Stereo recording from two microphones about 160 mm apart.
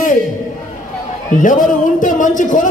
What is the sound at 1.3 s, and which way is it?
A man's voice, 55° left (ahead or behind).